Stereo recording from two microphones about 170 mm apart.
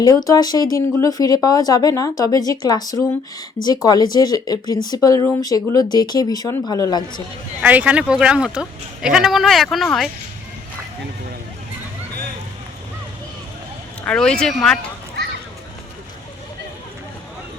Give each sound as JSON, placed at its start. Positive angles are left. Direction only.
{"t": 0.0, "sound": "speech", "side_deg": 20}
{"t": 7.6, "sound": "speech", "side_deg": -10}
{"t": 14.0, "sound": "speech", "side_deg": 5}